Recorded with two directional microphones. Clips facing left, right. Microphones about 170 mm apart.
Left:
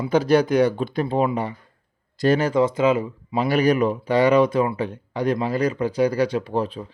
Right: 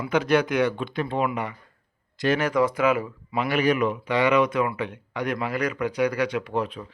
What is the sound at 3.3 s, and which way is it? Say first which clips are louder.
Speech: left 4 dB; 35° left (ahead or behind).